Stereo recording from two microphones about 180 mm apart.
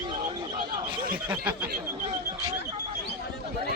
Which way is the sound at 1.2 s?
5° right (ahead or behind).